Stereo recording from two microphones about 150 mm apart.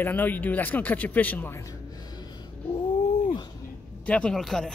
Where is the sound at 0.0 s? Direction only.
10° left (ahead or behind).